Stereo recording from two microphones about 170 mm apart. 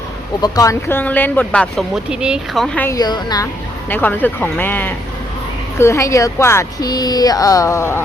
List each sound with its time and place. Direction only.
0.4 s speech: 20° left (ahead or behind)
2.0 s speech: 5° right (ahead or behind)
2.9 s a woman's voice: 25° left (ahead or behind)
3.8 s speech: 10° left (ahead or behind)